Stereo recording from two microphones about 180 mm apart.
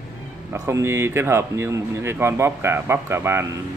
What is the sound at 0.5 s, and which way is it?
Speech, 15° right (ahead or behind).